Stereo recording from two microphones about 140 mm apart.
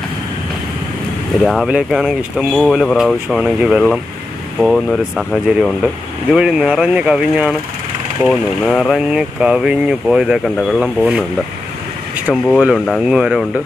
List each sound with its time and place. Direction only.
1.4 s speech: centre (ahead or behind)
8.2 s speech: 5° left (ahead or behind)
12.3 s speech: 5° left (ahead or behind)